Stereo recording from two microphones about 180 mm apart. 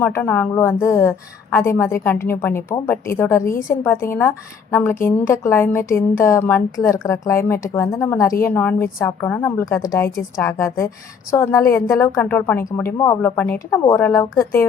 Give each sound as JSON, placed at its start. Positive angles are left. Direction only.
{"t": 0.0, "sound": "a woman's voice", "side_deg": 10}